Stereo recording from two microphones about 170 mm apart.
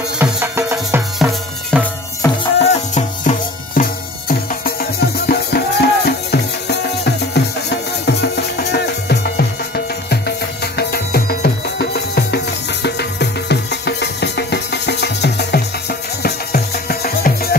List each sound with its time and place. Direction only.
0.2 s music: 15° right (ahead or behind)
1.7 s music: 5° left (ahead or behind)
2.2 s music: 20° left (ahead or behind)
2.6 s music: 40° left (ahead or behind); by 17.6 s 60° left (ahead or behind)